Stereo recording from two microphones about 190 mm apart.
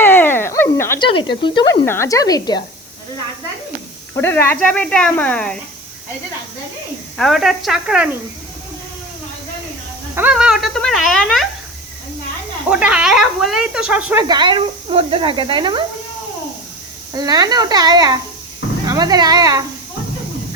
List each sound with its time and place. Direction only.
0.0 s a sound: 10° left (ahead or behind)
0.9 s a sound: 25° left (ahead or behind)
1.4 s speech: 25° left (ahead or behind)
1.8 s speech: 10° left (ahead or behind)
4.2 s speech: 10° left (ahead or behind)
7.2 s speech: centre (ahead or behind)
10.2 s speech: 5° right (ahead or behind)
12.7 s speech: 5° right (ahead or behind)
14.3 s speech: 25° right (ahead or behind)
17.2 s speech: 20° right (ahead or behind)